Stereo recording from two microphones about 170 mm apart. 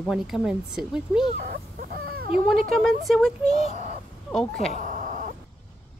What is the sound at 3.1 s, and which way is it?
Speech, centre (ahead or behind).